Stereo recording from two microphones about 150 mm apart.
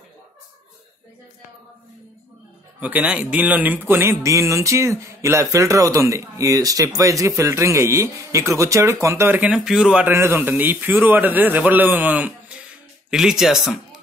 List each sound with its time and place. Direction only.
2.8 s a man's voice: 10° right (ahead or behind)